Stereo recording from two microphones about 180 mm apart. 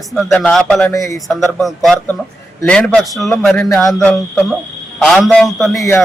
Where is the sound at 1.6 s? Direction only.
Centre (ahead or behind).